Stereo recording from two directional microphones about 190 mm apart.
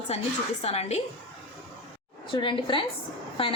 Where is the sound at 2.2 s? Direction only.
25° left (ahead or behind).